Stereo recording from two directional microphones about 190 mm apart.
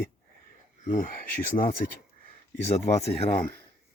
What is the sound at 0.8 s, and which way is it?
Speech, 45° left (ahead or behind).